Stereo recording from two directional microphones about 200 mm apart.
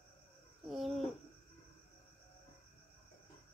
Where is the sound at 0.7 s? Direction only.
Centre (ahead or behind).